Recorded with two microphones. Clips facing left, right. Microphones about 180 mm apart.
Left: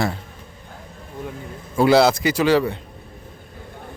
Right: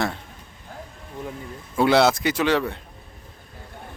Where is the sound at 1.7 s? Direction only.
Centre (ahead or behind).